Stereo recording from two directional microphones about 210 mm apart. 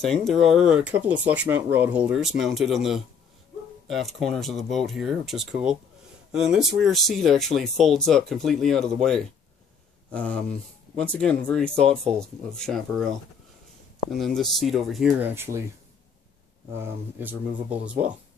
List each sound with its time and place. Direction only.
0.0 s speech: centre (ahead or behind)
10.1 s speech: 5° left (ahead or behind)
14.1 s speech: centre (ahead or behind)
16.7 s speech: 10° right (ahead or behind)